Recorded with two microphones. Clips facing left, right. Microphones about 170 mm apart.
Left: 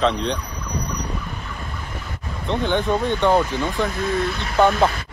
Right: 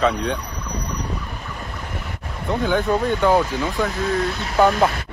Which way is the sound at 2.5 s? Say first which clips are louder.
Right 1 dB; 5° right (ahead or behind).